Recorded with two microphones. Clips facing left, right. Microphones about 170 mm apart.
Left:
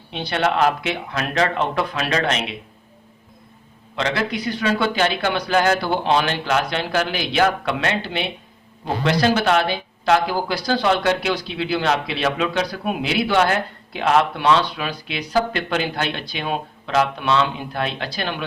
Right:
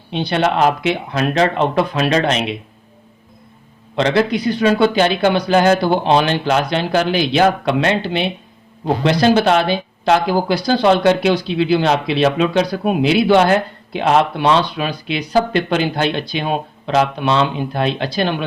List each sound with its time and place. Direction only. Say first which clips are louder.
0.1 s speech: right 4 dB; 20° right (ahead or behind)
3.9 s speech: right 7 dB; 25° right (ahead or behind)